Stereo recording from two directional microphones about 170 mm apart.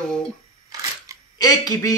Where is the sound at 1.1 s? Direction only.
20° right (ahead or behind).